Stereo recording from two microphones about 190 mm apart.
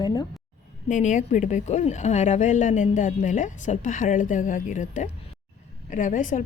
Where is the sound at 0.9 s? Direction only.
40° left (ahead or behind).